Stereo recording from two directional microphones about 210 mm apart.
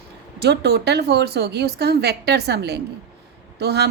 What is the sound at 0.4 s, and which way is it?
Speech, 50° right (ahead or behind).